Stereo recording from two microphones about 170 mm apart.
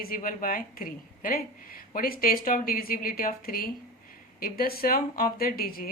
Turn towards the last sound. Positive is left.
turn(degrees=60)  # may be behind; listen again after turning